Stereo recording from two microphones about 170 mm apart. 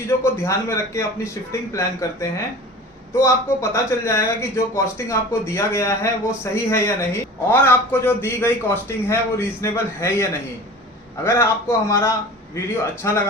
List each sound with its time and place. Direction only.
0.1 s speech: 15° left (ahead or behind)
3.2 s speech: 15° left (ahead or behind)